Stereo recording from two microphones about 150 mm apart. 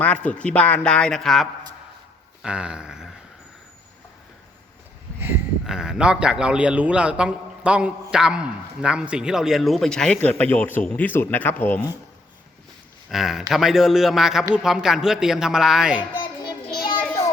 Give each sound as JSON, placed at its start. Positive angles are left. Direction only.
{"t": 0.0, "sound": "a man's voice", "side_deg": 10}
{"t": 2.4, "sound": "a sound", "side_deg": -5}
{"t": 5.6, "sound": "a man's voice", "side_deg": -5}
{"t": 13.1, "sound": "a man's voice", "side_deg": 0}
{"t": 16.1, "sound": "child singing", "side_deg": 30}
{"t": 17.0, "sound": "child singing", "side_deg": 10}